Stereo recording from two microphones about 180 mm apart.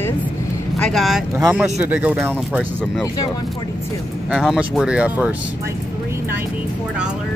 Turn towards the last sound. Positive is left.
turn(degrees=-15)  # may be behind; listen again after turning